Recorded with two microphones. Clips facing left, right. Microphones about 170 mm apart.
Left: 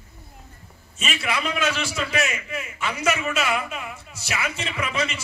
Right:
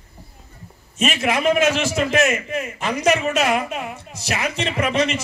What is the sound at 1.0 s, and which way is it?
A man's voice, 45° right (ahead or behind).